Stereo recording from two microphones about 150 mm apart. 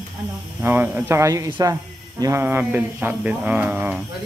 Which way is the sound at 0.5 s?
15° right (ahead or behind).